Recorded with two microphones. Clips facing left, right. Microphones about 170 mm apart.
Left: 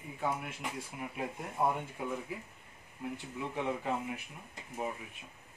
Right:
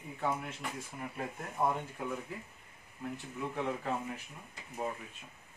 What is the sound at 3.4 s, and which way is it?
Speech, 15° left (ahead or behind).